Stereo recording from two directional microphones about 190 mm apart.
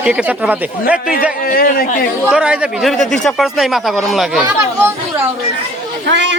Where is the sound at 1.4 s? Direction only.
50° left (ahead or behind).